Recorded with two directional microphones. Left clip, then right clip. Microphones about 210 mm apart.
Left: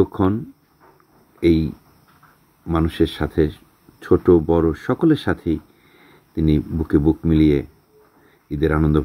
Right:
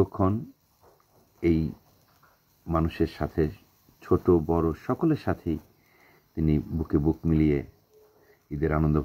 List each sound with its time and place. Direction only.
0.0 s speech: 25° left (ahead or behind)
1.4 s speech: 30° left (ahead or behind)
8.5 s speech: 25° left (ahead or behind)